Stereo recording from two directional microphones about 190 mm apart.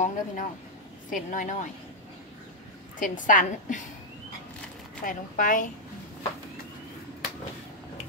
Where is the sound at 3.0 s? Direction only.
45° left (ahead or behind).